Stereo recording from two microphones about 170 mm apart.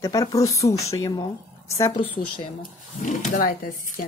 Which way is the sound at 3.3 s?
55° left (ahead or behind).